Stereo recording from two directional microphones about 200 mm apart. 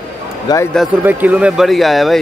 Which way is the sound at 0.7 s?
5° right (ahead or behind).